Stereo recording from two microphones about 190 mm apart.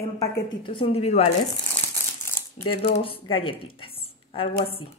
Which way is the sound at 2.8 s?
30° left (ahead or behind).